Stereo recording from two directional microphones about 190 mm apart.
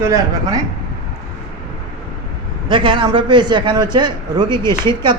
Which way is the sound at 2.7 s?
25° right (ahead or behind).